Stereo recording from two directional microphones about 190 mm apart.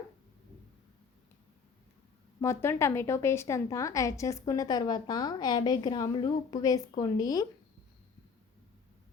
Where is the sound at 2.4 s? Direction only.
15° left (ahead or behind).